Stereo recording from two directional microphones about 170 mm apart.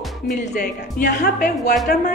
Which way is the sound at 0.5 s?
60° left (ahead or behind).